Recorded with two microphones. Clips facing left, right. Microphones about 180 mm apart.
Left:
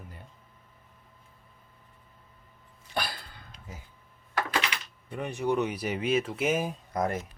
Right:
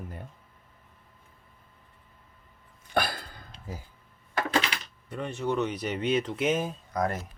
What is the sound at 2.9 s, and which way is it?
Cough, 50° right (ahead or behind).